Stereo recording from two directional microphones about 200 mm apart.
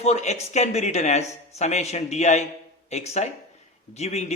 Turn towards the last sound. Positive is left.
turn(degrees=35)  # may be behind; listen again after turning